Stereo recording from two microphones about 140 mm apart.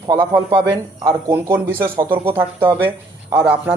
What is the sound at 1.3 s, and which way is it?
Speech, 15° right (ahead or behind).